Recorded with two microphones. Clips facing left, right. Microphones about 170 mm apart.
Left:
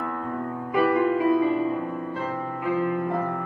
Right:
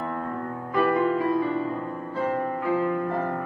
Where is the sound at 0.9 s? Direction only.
15° left (ahead or behind).